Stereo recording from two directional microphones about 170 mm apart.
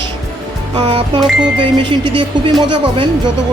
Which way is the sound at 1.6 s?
30° right (ahead or behind).